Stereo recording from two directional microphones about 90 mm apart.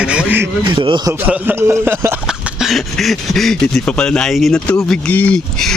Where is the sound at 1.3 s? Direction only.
25° right (ahead or behind).